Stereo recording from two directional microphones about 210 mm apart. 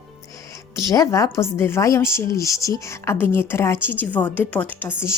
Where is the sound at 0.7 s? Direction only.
15° left (ahead or behind).